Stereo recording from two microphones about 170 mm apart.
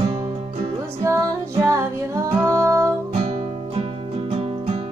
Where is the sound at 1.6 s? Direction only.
20° right (ahead or behind).